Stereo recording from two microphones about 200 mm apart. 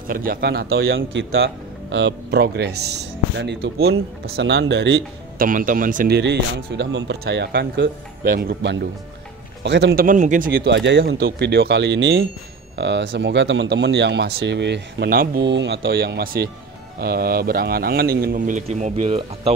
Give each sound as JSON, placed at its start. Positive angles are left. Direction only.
{"t": 0.1, "sound": "a man's voice", "side_deg": -45}
{"t": 0.8, "sound": "speech", "side_deg": -75}
{"t": 5.5, "sound": "a man's voice", "side_deg": -45}
{"t": 10.0, "sound": "a man's voice", "side_deg": -40}